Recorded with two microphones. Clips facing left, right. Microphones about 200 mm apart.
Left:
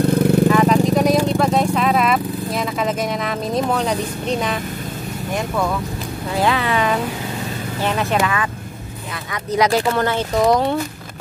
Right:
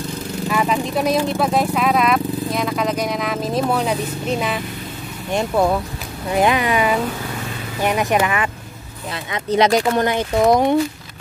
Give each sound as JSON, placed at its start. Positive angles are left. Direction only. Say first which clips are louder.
{"t": 0.0, "sound": "vehicle", "louder": "left 12 dB", "side_deg": 60}
{"t": 0.5, "sound": "vehicle", "louder": "left 6 dB", "side_deg": -5}
{"t": 1.3, "sound": "speech", "louder": "left 1 dB", "side_deg": -5}
{"t": 5.3, "sound": "speech", "louder": "right 4 dB", "side_deg": -30}
{"t": 6.3, "sound": "speech", "louder": "right 2 dB", "side_deg": -15}